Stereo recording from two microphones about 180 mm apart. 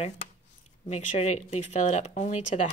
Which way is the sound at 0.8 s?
40° left (ahead or behind).